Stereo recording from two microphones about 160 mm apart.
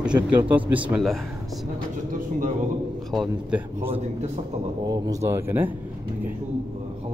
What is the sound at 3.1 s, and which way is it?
Speech, centre (ahead or behind).